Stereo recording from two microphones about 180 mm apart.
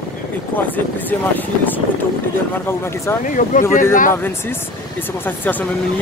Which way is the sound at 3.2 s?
45° left (ahead or behind).